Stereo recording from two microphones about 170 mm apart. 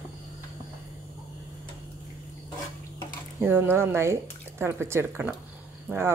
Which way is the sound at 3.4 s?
15° right (ahead or behind).